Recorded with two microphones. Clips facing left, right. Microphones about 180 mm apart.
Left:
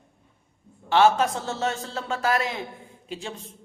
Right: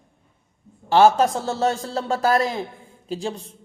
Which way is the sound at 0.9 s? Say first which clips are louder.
Right 4 dB; 40° right (ahead or behind).